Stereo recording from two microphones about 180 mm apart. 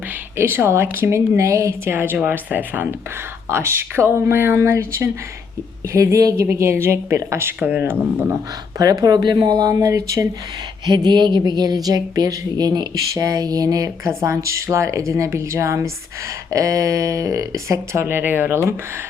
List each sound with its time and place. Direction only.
0.3 s a woman's voice: 15° right (ahead or behind)
5.9 s a woman's voice: 15° right (ahead or behind)